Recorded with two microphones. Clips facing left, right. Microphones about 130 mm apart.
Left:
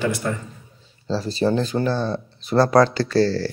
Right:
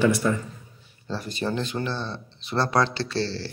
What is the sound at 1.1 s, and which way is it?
Speech, 30° left (ahead or behind).